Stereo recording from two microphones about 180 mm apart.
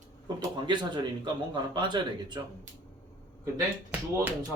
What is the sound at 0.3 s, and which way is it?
Speech, 25° right (ahead or behind).